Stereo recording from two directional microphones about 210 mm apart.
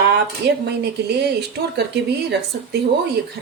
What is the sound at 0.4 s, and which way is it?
A woman's voice, 55° right (ahead or behind).